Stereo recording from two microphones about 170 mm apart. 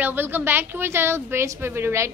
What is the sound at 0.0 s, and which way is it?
A woman's voice, 10° right (ahead or behind).